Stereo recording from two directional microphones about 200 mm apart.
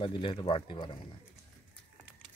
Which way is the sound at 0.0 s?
25° left (ahead or behind).